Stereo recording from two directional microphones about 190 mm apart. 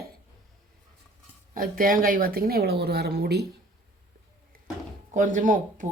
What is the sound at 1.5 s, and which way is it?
Speech, 50° right (ahead or behind).